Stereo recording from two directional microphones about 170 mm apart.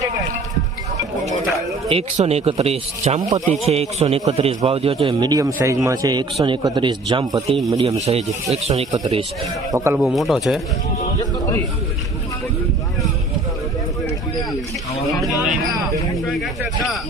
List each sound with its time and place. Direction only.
1.9 s a man's voice: 35° right (ahead or behind)
7.9 s a man's voice: 40° right (ahead or behind)
9.7 s speech: 15° right (ahead or behind)
10.0 s speech: centre (ahead or behind)
16.4 s speech: centre (ahead or behind)